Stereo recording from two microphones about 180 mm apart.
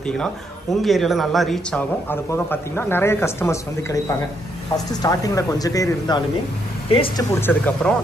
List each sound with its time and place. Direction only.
0.8 s speech: centre (ahead or behind)
5.0 s speech: 20° left (ahead or behind)
7.3 s speech: 10° left (ahead or behind)